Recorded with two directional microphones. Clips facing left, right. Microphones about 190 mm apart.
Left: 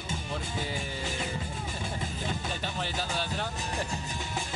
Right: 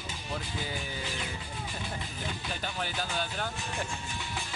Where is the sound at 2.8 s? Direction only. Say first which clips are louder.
Even; centre (ahead or behind).